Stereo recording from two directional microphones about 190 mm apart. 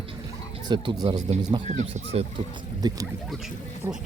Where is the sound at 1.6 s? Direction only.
40° right (ahead or behind).